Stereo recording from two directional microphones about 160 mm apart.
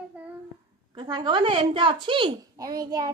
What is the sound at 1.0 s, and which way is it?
A child's voice, 25° right (ahead or behind).